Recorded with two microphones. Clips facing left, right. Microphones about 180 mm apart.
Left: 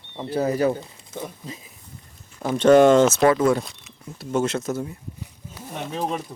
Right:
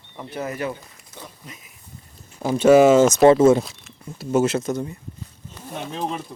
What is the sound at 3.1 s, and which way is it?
Speech, 25° right (ahead or behind).